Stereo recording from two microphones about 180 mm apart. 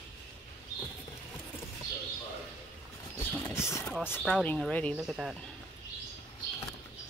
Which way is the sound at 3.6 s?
15° left (ahead or behind).